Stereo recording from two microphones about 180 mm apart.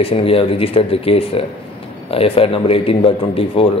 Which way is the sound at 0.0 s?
30° left (ahead or behind).